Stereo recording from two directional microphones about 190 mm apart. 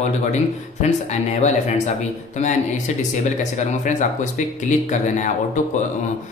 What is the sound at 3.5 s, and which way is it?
Speech, 40° left (ahead or behind).